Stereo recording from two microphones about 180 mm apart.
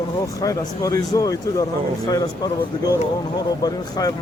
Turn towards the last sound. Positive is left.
turn(degrees=20)  # may be behind; listen again after turning